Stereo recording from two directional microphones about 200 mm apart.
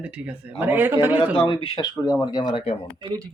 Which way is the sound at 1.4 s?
25° left (ahead or behind).